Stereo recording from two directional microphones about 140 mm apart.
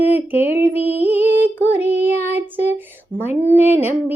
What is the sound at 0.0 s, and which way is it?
Child singing, 15° right (ahead or behind).